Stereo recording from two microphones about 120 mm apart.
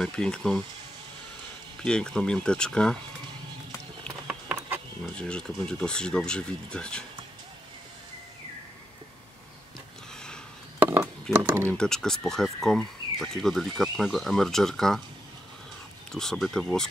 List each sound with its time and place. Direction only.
0.0 s speech: 5° left (ahead or behind)
1.8 s speech: 5° left (ahead or behind)
5.1 s speech: 10° left (ahead or behind)
10.8 s a sound: 20° right (ahead or behind)
11.3 s speech: 20° right (ahead or behind)
11.7 s speech: 5° left (ahead or behind)
16.1 s speech: 5° left (ahead or behind)